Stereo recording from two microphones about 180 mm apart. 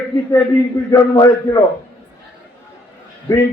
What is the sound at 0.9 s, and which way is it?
Speech, 20° left (ahead or behind).